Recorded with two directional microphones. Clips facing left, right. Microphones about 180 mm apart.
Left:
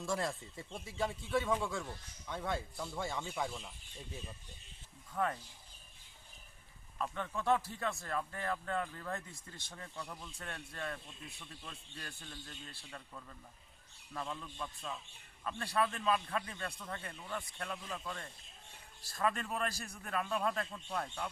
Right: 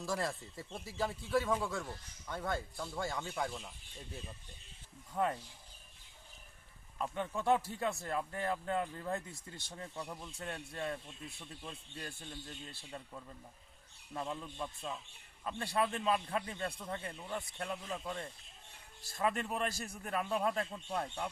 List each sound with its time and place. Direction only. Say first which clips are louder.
0.0 s speech: even; centre (ahead or behind)
5.1 s speech: right 2 dB; 20° right (ahead or behind)
7.0 s speech: right 2 dB; 20° right (ahead or behind)